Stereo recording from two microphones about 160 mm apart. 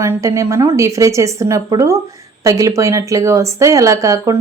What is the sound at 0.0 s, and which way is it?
Speech, 20° right (ahead or behind).